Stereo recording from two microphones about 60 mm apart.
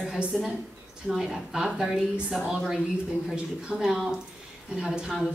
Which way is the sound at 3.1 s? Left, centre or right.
Centre.